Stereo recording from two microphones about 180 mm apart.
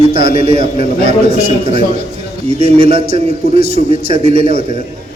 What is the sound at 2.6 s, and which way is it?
A man's voice, 35° right (ahead or behind).